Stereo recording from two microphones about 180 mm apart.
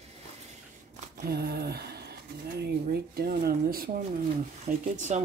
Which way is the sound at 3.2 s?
55° right (ahead or behind).